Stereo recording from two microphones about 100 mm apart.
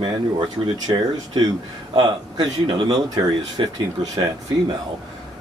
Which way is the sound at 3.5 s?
45° right (ahead or behind).